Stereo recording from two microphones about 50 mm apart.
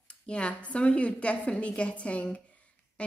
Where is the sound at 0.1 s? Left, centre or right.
Left.